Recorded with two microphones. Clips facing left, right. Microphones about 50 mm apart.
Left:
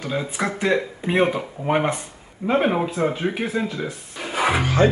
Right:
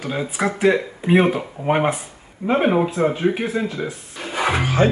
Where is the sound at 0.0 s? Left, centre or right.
Centre.